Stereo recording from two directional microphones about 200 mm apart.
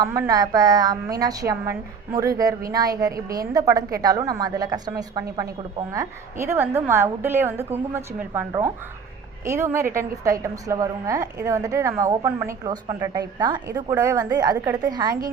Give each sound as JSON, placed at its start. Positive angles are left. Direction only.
{"t": 0.0, "sound": "a woman's voice", "side_deg": -15}